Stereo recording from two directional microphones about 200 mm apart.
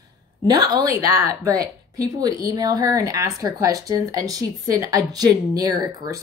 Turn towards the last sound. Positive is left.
turn(degrees=-20)  # may be behind; listen again after turning